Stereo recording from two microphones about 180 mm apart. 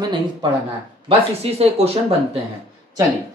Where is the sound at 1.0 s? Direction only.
35° right (ahead or behind).